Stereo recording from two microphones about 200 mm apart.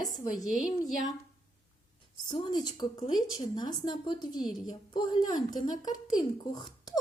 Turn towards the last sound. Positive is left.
turn(degrees=20)  # may be behind; listen again after turning